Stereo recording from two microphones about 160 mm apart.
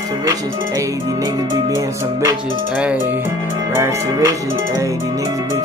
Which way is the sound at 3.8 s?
20° right (ahead or behind).